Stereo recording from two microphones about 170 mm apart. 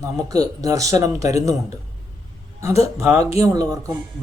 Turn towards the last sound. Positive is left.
turn(degrees=-20)  # may be behind; listen again after turning